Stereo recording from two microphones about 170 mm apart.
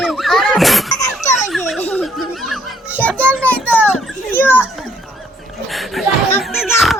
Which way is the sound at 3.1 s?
5° left (ahead or behind).